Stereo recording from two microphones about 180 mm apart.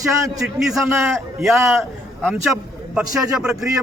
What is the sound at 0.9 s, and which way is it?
Speech, 15° right (ahead or behind).